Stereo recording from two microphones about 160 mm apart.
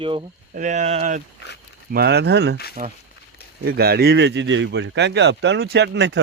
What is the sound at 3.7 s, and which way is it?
Speech, 75° right (ahead or behind).